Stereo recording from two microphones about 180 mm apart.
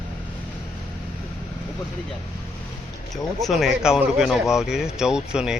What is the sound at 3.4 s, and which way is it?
Speech, centre (ahead or behind).